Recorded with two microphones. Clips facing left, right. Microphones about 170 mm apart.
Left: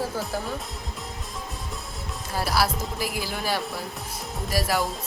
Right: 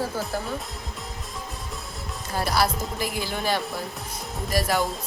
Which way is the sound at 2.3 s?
5° left (ahead or behind).